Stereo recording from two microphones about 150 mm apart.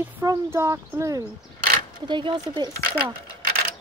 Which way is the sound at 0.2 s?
20° right (ahead or behind).